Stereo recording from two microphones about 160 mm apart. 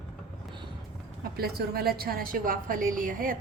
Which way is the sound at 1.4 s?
75° right (ahead or behind).